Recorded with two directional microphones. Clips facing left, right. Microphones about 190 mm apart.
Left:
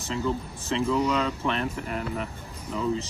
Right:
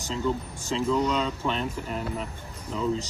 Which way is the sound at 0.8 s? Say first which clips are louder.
Even; 10° left (ahead or behind).